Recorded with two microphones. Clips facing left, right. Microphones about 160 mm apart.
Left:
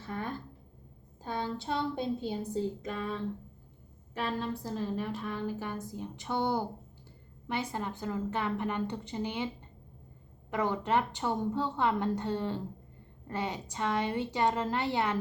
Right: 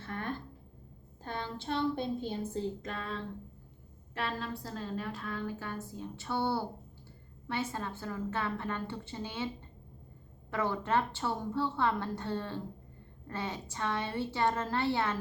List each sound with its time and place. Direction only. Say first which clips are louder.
0.0 s a sound: left 1 dB; 15° left (ahead or behind)
1.2 s a woman's voice: left 4 dB; 10° left (ahead or behind)
10.5 s a woman's voice: left 2 dB; 15° left (ahead or behind)